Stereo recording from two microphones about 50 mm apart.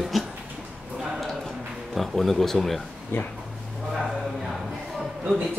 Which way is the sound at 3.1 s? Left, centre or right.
Left.